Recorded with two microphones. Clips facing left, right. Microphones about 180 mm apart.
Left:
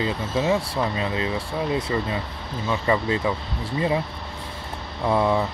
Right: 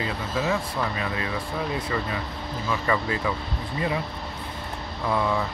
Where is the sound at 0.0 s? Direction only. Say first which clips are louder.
Left 4 dB; 25° left (ahead or behind).